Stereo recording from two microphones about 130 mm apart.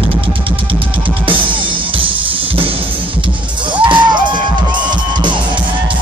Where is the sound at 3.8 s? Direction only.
35° right (ahead or behind).